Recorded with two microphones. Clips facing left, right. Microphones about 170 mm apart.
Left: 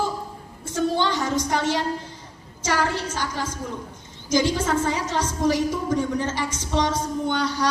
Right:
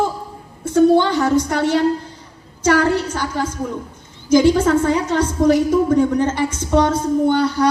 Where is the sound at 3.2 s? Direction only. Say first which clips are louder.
Right 6 dB; 55° right (ahead or behind).